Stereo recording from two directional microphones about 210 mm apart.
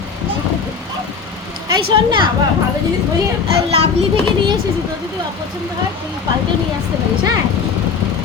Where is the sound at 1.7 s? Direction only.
20° right (ahead or behind).